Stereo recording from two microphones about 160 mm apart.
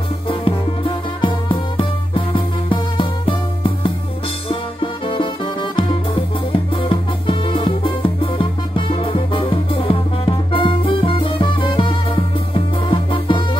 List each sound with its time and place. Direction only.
1.2 s music: 35° left (ahead or behind)
5.0 s music: 30° left (ahead or behind)